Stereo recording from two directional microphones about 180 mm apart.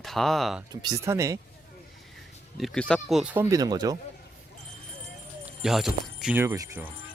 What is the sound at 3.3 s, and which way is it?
Speech, 20° right (ahead or behind).